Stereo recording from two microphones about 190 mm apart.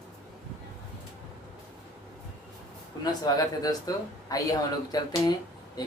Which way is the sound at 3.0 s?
20° left (ahead or behind).